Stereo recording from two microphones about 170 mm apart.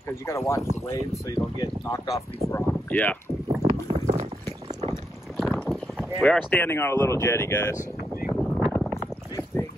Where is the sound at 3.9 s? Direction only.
40° right (ahead or behind).